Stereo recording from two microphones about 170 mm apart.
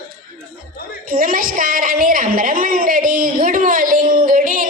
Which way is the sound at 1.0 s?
55° right (ahead or behind).